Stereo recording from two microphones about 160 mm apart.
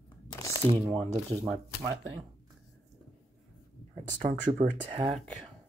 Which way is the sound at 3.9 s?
50° right (ahead or behind).